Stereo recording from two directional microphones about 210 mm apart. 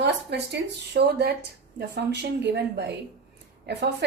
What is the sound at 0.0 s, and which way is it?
Speech, 55° right (ahead or behind).